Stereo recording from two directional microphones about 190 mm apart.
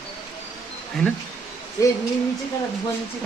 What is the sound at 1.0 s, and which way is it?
Speech, centre (ahead or behind).